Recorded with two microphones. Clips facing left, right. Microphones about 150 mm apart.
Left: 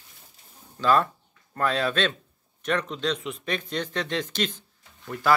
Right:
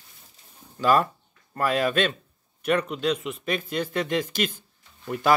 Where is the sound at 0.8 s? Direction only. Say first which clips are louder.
Right 1 dB; 10° right (ahead or behind).